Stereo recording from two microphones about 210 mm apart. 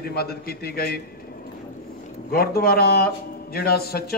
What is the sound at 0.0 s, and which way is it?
Speech, 50° left (ahead or behind).